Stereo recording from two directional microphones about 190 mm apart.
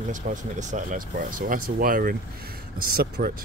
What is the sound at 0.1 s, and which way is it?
Speech, 40° right (ahead or behind).